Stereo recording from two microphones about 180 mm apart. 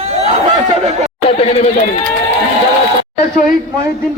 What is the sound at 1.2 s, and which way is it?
Speech, 35° left (ahead or behind).